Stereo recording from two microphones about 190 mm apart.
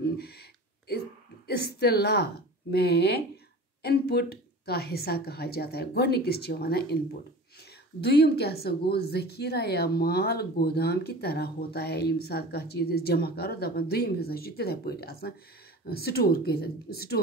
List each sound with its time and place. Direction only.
0.0 s a sound: 55° left (ahead or behind)
1.6 s a woman's voice: 55° left (ahead or behind)
8.0 s speech: 60° left (ahead or behind)